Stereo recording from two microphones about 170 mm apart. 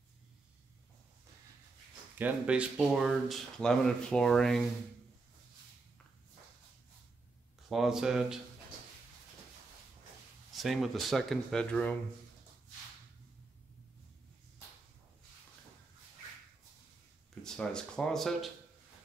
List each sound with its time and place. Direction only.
2.1 s speech: 10° right (ahead or behind)
7.7 s speech: centre (ahead or behind)
10.5 s speech: centre (ahead or behind)
17.4 s speech: 5° left (ahead or behind)